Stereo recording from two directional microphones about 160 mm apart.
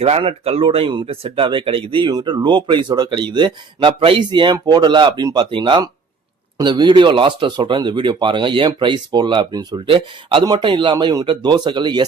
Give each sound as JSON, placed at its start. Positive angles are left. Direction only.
{"t": 0.0, "sound": "speech", "side_deg": -35}